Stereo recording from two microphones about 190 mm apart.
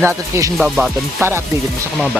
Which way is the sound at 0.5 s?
Centre (ahead or behind).